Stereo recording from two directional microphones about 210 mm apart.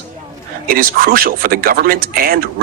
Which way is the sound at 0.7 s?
45° right (ahead or behind).